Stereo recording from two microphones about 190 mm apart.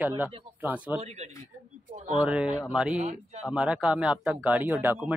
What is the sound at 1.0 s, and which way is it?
Speech, 35° right (ahead or behind).